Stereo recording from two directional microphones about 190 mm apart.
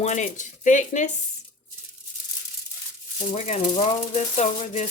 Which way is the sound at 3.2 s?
35° left (ahead or behind).